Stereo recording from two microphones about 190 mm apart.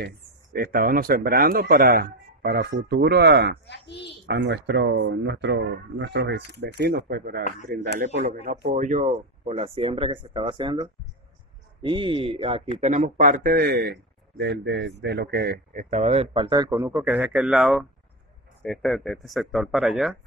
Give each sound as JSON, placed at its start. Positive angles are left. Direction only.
{"t": 0.0, "sound": "a man's voice", "side_deg": -50}
{"t": 3.6, "sound": "a child's voice", "side_deg": 65}
{"t": 4.3, "sound": "a man's voice", "side_deg": -65}
{"t": 8.1, "sound": "a man's voice", "side_deg": -40}
{"t": 16.9, "sound": "speech", "side_deg": -10}